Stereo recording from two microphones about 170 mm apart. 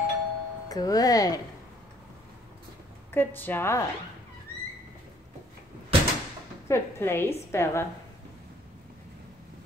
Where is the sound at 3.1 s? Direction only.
10° left (ahead or behind).